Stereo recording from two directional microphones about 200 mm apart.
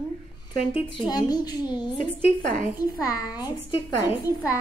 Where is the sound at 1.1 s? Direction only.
20° left (ahead or behind).